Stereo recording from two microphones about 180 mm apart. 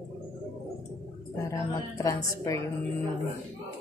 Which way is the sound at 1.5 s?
20° left (ahead or behind).